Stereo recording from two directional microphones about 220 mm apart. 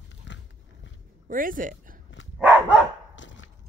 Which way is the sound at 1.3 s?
40° right (ahead or behind).